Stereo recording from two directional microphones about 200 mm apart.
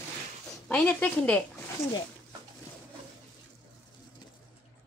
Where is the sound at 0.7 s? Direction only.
5° left (ahead or behind).